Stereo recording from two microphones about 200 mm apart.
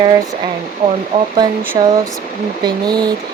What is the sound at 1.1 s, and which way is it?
Speech, 30° right (ahead or behind).